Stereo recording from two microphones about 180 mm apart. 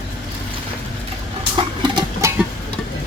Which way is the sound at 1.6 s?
25° right (ahead or behind).